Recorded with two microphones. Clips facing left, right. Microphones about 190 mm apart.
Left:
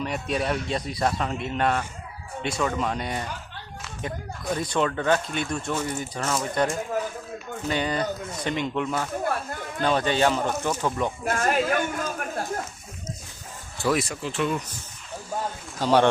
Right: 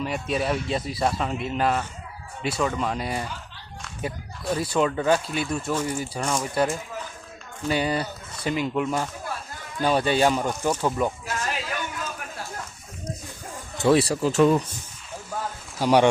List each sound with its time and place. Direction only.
0.0 s speech: centre (ahead or behind)
9.2 s a sound: 55° left (ahead or behind)
9.8 s speech: 10° right (ahead or behind)
11.3 s a sound: 50° left (ahead or behind)
13.7 s speech: 25° right (ahead or behind)
15.8 s speech: 15° right (ahead or behind)